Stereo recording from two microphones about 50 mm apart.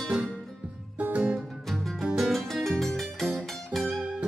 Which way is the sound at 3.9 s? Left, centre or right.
Right.